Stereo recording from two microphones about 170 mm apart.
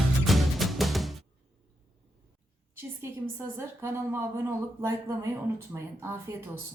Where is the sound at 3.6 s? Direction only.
15° right (ahead or behind).